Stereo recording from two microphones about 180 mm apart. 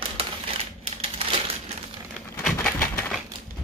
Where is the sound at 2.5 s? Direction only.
15° left (ahead or behind).